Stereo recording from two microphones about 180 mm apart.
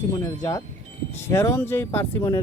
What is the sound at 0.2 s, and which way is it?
Speech, 15° left (ahead or behind).